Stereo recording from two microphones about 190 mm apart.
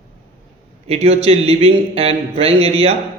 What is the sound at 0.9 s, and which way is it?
A man's voice, 35° right (ahead or behind).